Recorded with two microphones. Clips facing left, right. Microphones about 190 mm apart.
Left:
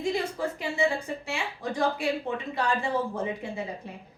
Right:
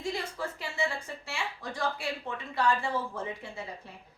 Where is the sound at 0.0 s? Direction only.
15° left (ahead or behind).